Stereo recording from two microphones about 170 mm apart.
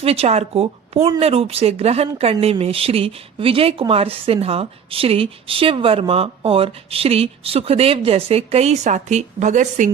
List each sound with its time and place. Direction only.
0.0 s speech: 35° right (ahead or behind)